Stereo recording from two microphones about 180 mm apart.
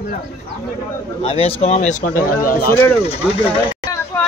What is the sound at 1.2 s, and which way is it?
A man's voice, 35° left (ahead or behind).